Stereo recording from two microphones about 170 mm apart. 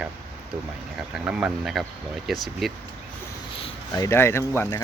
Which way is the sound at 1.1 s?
5° right (ahead or behind).